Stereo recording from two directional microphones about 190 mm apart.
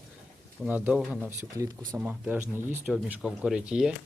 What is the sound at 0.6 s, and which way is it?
Speech, 5° right (ahead or behind).